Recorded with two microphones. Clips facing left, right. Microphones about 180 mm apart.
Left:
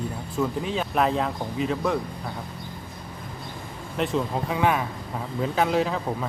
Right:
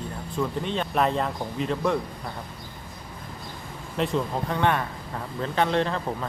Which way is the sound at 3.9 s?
Centre (ahead or behind).